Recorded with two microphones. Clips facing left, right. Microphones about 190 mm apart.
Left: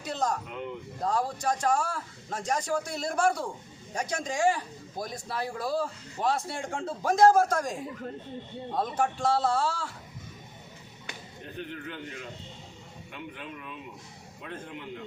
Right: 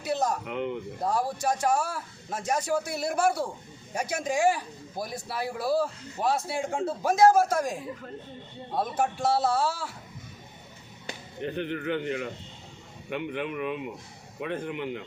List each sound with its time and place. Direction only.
0.0 s speech: 10° right (ahead or behind)
0.4 s speech: 65° right (ahead or behind)
1.0 s a man's voice: 10° right (ahead or behind)
11.3 s a man's voice: 80° right